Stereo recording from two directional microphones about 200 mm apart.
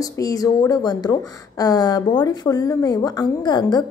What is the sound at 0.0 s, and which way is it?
A woman's voice, 20° left (ahead or behind).